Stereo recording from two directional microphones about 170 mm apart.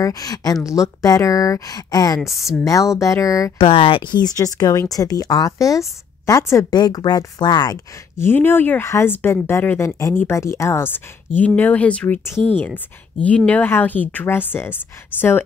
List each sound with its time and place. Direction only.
0.0 s speech: 20° left (ahead or behind)
3.6 s speech: 35° left (ahead or behind); by 15.4 s 15° left (ahead or behind)